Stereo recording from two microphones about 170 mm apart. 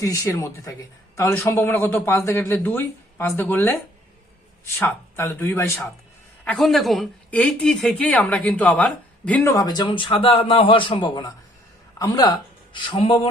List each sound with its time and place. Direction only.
0.0 s speech: 20° left (ahead or behind)
6.4 s speech: 5° left (ahead or behind); by 13.1 s 30° left (ahead or behind)